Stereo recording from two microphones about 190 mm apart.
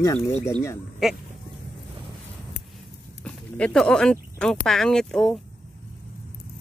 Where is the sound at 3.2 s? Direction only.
5° left (ahead or behind).